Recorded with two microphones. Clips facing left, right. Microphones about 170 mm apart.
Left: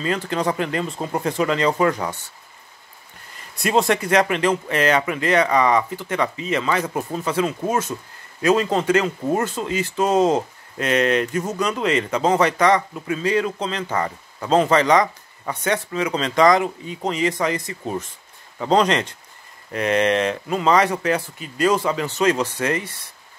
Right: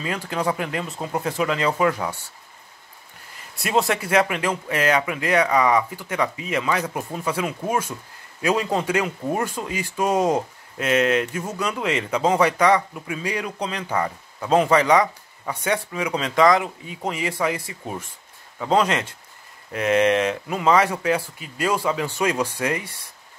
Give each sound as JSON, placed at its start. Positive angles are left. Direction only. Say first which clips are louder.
{"t": 0.0, "sound": "speech", "louder": "left 3 dB", "side_deg": -10}
{"t": 3.6, "sound": "speech", "louder": "left 3 dB", "side_deg": -5}
{"t": 6.9, "sound": "speech", "louder": "left 4 dB", "side_deg": 25}
{"t": 7.2, "sound": "speech", "louder": "left 3 dB", "side_deg": -10}